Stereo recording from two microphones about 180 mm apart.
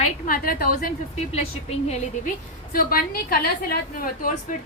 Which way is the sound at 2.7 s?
55° left (ahead or behind).